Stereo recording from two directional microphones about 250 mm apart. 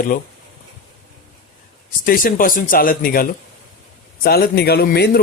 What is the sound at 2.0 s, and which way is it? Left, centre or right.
Speech, left.